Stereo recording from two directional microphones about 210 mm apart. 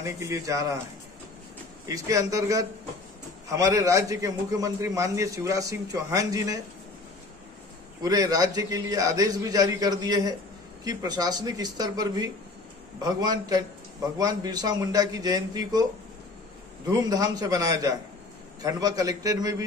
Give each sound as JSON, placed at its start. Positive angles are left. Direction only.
{"t": 0.0, "sound": "a man's voice", "side_deg": -15}
{"t": 1.9, "sound": "a man's voice", "side_deg": -15}
{"t": 8.0, "sound": "a man's voice", "side_deg": -15}
{"t": 17.0, "sound": "a man's voice", "side_deg": -20}